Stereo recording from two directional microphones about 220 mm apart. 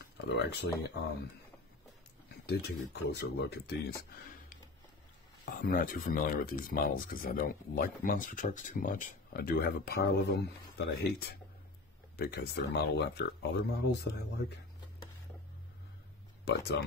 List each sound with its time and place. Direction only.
0.5 s speech: 50° left (ahead or behind)
2.4 s speech: 45° left (ahead or behind)
5.4 s speech: 40° left (ahead or behind)
16.4 s speech: 50° left (ahead or behind)